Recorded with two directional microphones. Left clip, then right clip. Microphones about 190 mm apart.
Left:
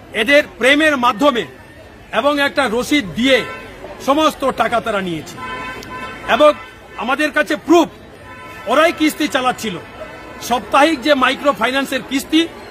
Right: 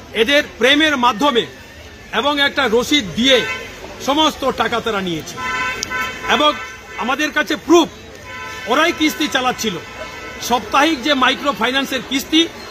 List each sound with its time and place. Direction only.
0.1 s speech: 20° left (ahead or behind)
6.2 s speech: 20° left (ahead or behind)
8.6 s speech: 15° left (ahead or behind)